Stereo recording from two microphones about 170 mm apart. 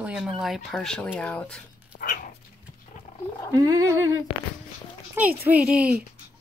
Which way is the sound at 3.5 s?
20° right (ahead or behind).